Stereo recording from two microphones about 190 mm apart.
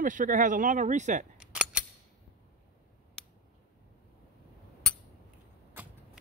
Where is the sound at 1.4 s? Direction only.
5° right (ahead or behind).